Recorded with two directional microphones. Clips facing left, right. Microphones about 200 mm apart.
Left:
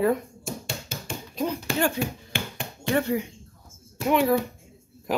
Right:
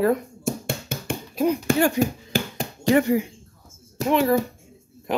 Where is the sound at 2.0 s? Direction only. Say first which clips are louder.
Right 7 dB; 40° right (ahead or behind).